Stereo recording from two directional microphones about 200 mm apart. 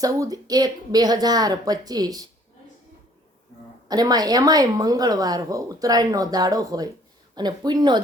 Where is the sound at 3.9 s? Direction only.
20° right (ahead or behind).